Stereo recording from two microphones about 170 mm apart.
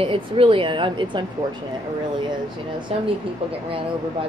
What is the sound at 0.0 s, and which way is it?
Speech, 30° right (ahead or behind).